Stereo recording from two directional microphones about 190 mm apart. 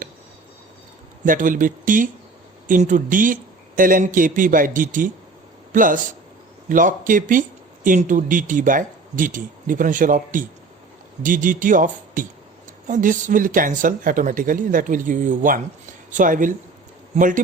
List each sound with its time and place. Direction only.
1.2 s speech: 45° right (ahead or behind)